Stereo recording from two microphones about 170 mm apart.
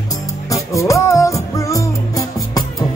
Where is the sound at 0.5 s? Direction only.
20° left (ahead or behind).